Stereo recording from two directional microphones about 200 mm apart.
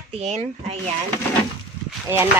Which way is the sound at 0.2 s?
35° right (ahead or behind).